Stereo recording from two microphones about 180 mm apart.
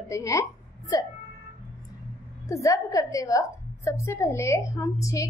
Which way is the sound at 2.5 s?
15° left (ahead or behind).